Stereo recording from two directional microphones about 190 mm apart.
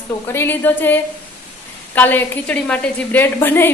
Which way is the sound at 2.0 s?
10° left (ahead or behind).